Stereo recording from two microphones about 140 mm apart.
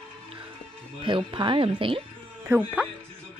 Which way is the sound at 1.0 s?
35° right (ahead or behind).